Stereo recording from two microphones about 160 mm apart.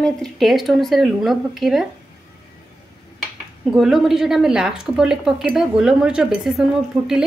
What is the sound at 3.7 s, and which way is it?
Speech, 5° right (ahead or behind).